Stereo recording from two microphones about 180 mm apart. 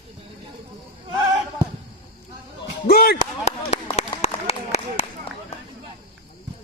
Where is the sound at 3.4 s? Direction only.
40° left (ahead or behind).